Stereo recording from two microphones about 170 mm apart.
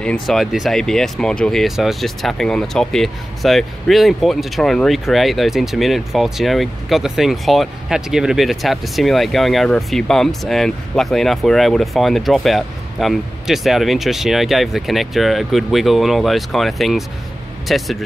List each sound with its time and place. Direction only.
0.0 s speech: 5° left (ahead or behind)